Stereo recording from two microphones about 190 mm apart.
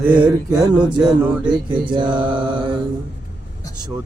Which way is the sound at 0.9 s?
5° right (ahead or behind).